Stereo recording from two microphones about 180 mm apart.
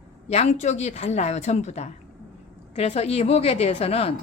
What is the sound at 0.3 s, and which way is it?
A woman's voice, 40° left (ahead or behind).